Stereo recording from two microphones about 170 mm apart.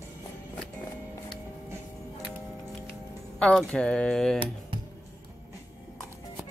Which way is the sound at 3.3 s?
5° left (ahead or behind).